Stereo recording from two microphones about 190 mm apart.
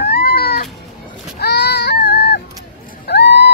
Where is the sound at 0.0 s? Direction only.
55° left (ahead or behind).